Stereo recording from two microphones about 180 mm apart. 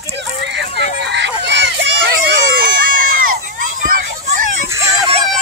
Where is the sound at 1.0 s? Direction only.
75° right (ahead or behind).